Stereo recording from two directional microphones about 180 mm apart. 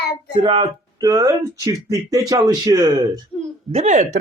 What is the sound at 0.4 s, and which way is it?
Speech, 25° right (ahead or behind).